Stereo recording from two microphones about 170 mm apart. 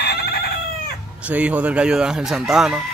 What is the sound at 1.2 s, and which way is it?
Speech, 10° right (ahead or behind).